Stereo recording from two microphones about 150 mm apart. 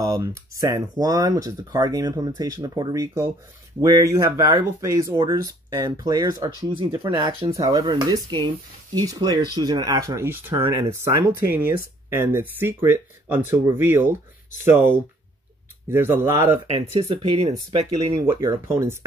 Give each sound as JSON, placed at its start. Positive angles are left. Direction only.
{"t": 0.0, "sound": "speech", "side_deg": -20}
{"t": 16.6, "sound": "speech", "side_deg": -40}
{"t": 18.4, "sound": "speech", "side_deg": -20}